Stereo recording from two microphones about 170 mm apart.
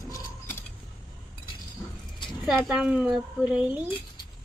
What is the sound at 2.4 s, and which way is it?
Speech, 5° right (ahead or behind).